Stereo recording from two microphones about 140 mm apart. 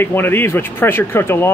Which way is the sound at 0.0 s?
15° left (ahead or behind).